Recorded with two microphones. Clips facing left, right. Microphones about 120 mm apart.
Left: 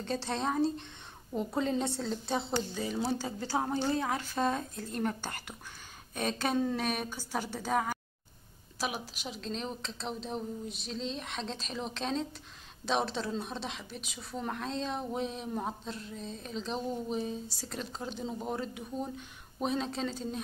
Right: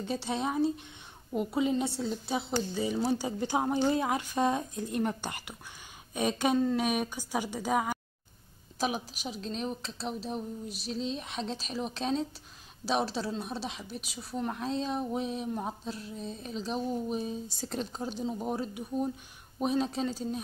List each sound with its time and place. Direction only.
0.0 s a woman's voice: 5° right (ahead or behind)
17.6 s speech: 25° right (ahead or behind)
18.0 s a woman's voice: 10° right (ahead or behind)